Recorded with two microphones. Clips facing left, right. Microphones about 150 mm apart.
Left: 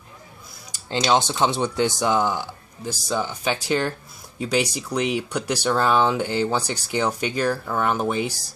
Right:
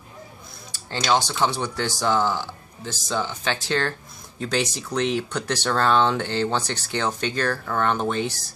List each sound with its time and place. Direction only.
0.7 s speech: 20° left (ahead or behind)